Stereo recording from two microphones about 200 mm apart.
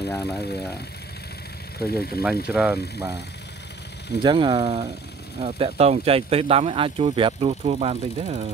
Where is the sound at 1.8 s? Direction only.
50° left (ahead or behind).